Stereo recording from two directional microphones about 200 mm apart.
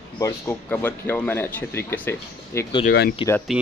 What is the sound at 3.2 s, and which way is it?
Speech, 25° left (ahead or behind).